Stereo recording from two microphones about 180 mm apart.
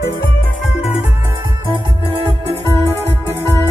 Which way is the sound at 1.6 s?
30° right (ahead or behind).